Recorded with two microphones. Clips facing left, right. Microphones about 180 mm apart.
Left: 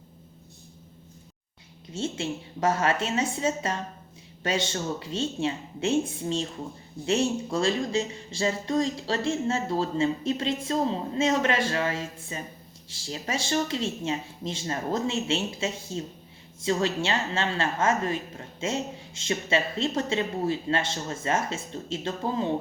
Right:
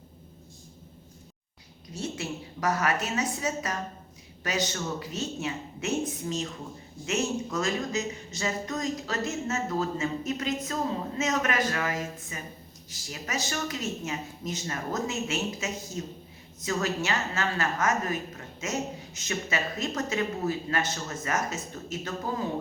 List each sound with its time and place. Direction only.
1.9 s a woman's voice: 25° left (ahead or behind)